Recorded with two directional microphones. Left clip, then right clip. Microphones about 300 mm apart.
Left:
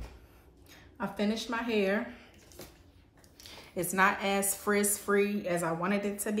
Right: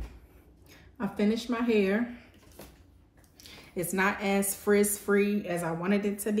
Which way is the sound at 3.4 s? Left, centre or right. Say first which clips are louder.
Right 1 dB; centre.